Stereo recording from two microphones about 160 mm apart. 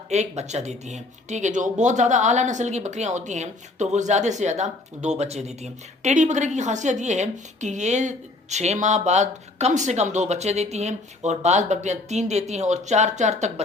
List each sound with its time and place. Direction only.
0.1 s speech: 45° right (ahead or behind)